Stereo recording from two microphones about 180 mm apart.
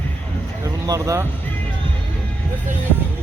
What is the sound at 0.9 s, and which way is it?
Speech, 20° right (ahead or behind).